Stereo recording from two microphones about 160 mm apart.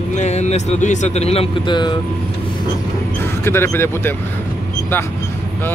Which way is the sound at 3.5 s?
15° left (ahead or behind).